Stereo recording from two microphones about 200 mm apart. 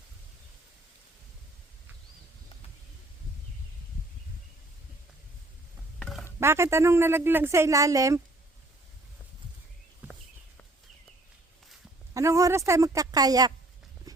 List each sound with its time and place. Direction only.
6.0 s mechanisms: centre (ahead or behind)
6.4 s speech: 15° right (ahead or behind)
12.1 s speech: 15° right (ahead or behind)